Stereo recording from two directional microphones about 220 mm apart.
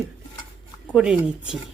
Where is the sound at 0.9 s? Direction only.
5° right (ahead or behind).